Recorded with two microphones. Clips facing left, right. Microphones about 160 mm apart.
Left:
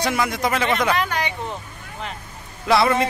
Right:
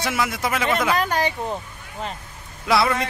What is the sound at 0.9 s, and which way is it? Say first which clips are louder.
Speech: right 2 dB; 40° right (ahead or behind).